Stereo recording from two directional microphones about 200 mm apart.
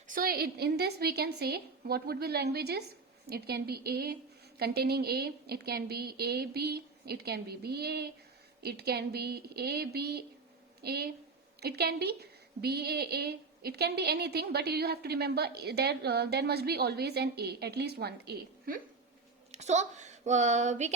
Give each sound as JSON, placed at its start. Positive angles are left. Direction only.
{"t": 0.1, "sound": "a woman's voice", "side_deg": -45}
{"t": 19.5, "sound": "speech", "side_deg": -35}